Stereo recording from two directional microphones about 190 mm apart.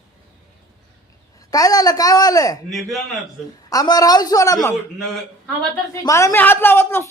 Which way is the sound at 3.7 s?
20° left (ahead or behind).